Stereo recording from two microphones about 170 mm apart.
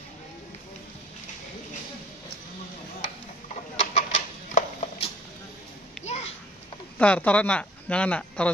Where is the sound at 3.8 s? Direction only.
40° left (ahead or behind).